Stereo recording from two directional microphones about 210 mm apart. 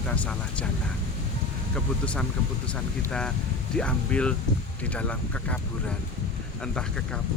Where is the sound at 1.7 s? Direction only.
5° left (ahead or behind).